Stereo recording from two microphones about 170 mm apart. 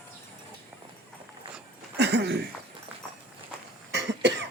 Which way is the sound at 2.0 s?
80° right.